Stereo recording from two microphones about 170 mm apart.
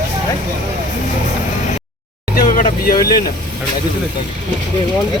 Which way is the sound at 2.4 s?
50° left (ahead or behind).